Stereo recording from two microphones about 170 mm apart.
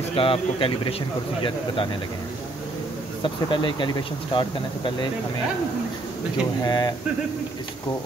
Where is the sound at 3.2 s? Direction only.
30° left (ahead or behind).